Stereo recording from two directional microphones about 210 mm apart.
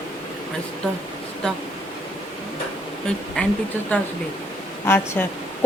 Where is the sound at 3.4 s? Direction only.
5° left (ahead or behind).